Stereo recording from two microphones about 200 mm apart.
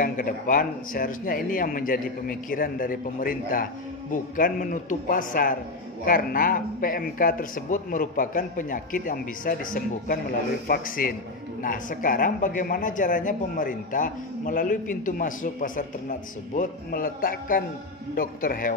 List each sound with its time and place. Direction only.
0.0 s speech: 45° left (ahead or behind)